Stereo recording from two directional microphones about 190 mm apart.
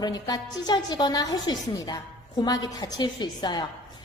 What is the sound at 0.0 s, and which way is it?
A woman's voice, 20° left (ahead or behind).